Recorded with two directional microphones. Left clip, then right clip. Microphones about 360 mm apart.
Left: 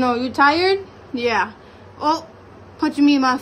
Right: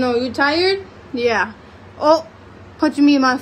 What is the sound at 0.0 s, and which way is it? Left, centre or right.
A woman's voice, centre.